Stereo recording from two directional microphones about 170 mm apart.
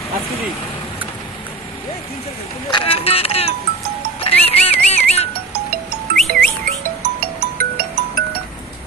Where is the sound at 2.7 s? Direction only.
30° left (ahead or behind).